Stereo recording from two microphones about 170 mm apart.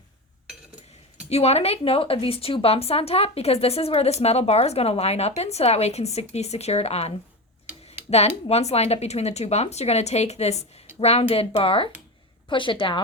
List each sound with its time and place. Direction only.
1.3 s speech: 40° left (ahead or behind)
8.4 s a woman's voice: 40° left (ahead or behind)